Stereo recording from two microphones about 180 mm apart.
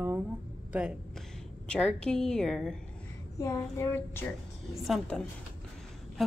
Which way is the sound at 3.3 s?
15° left (ahead or behind).